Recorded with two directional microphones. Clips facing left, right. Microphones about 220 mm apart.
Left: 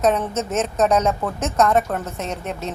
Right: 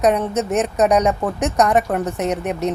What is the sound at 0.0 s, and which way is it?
A woman's voice, 15° right (ahead or behind).